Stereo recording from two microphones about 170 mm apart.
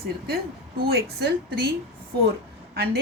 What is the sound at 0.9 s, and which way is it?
Speech, 75° right (ahead or behind).